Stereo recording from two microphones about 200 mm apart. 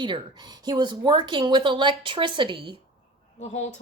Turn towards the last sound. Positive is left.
turn(degrees=35)  # may be behind; listen again after turning